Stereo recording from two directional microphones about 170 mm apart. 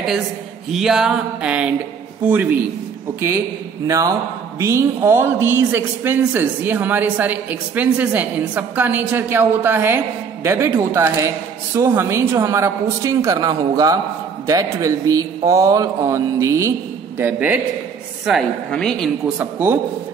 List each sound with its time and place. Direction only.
0.7 s a woman's voice: 5° right (ahead or behind)
3.8 s a man's voice: 20° right (ahead or behind); by 19.3 s 5° left (ahead or behind)
19.3 s a woman's voice: 10° right (ahead or behind)